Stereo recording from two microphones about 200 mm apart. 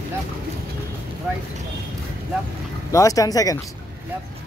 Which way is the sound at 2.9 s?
15° left (ahead or behind).